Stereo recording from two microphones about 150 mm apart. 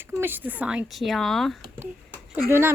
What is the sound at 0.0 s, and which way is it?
Speech, 15° right (ahead or behind).